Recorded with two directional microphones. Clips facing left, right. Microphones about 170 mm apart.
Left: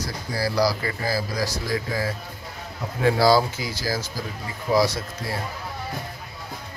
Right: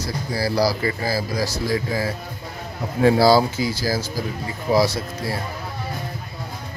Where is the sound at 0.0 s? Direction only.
30° right (ahead or behind).